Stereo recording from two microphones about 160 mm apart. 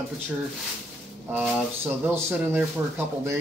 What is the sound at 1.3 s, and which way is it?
Speech, 10° right (ahead or behind).